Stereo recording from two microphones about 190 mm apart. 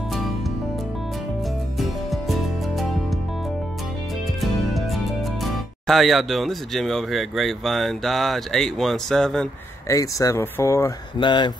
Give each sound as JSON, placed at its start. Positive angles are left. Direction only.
{"t": 1.8, "sound": "music", "side_deg": 0}
{"t": 4.4, "sound": "speech", "side_deg": 0}
{"t": 9.8, "sound": "speech", "side_deg": 15}